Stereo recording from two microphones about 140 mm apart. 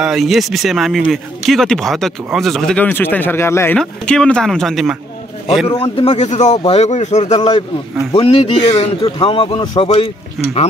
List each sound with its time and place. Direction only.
0.0 s speech: centre (ahead or behind); by 3.7 s 20° left (ahead or behind)
3.7 s speech: 5° left (ahead or behind)
5.8 s speech: 40° left (ahead or behind)
9.0 s speech: 40° left (ahead or behind)